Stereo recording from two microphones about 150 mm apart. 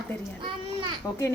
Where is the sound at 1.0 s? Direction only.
20° left (ahead or behind).